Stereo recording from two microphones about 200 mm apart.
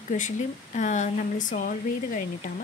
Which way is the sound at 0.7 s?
35° left (ahead or behind).